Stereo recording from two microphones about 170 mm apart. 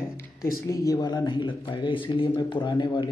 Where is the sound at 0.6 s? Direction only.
20° left (ahead or behind).